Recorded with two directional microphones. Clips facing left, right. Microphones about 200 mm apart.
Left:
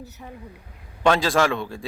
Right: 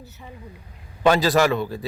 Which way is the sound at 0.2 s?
Centre (ahead or behind).